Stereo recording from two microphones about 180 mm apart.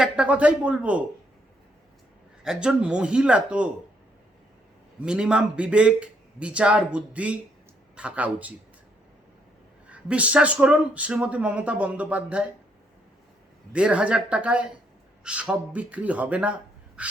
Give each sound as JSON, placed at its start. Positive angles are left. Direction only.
{"t": 0.0, "sound": "speech", "side_deg": -5}
{"t": 2.4, "sound": "speech", "side_deg": -5}
{"t": 5.0, "sound": "speech", "side_deg": -5}
{"t": 9.9, "sound": "speech", "side_deg": -5}
{"t": 13.7, "sound": "speech", "side_deg": -5}
{"t": 17.0, "sound": "duck", "side_deg": -5}